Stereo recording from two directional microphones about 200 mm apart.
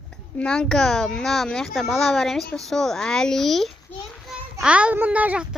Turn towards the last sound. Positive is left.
turn(degrees=-5)  # may be behind; listen again after turning